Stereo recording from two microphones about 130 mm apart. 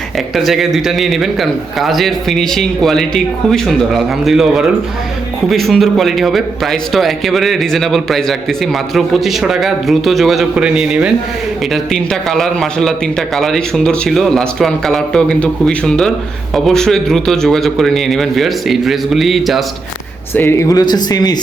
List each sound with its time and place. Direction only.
0.3 s a man's voice: centre (ahead or behind)
20.3 s speech: 20° left (ahead or behind)